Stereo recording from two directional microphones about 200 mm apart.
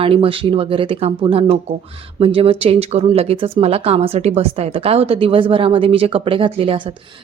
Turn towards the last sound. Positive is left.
turn(degrees=-30)  # may be behind; listen again after turning